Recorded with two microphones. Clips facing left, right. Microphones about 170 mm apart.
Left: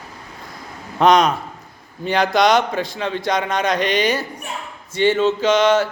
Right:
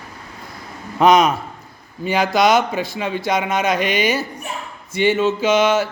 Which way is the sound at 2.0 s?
5° right (ahead or behind).